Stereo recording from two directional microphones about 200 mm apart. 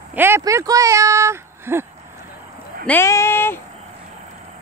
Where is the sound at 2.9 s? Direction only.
15° left (ahead or behind).